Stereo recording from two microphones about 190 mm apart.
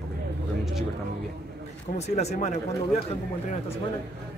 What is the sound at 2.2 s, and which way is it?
Speech, 35° left (ahead or behind).